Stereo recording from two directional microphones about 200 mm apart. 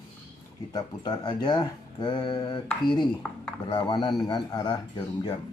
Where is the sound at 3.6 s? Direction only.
25° left (ahead or behind).